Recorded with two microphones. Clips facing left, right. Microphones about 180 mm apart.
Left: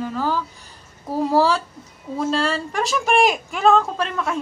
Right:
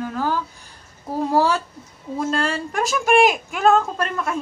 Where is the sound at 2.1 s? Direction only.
Centre (ahead or behind).